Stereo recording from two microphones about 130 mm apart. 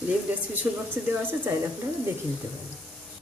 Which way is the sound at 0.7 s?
15° right (ahead or behind).